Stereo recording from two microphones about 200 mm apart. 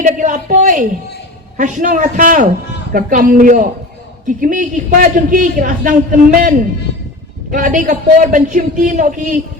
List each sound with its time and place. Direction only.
0.0 s a man's voice: 40° right (ahead or behind)
7.5 s a man's voice: 40° right (ahead or behind)